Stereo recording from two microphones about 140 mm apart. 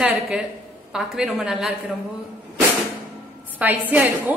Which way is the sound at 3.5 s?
10° right (ahead or behind).